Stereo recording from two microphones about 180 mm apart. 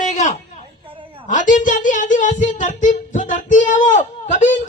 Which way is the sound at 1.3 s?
45° left (ahead or behind).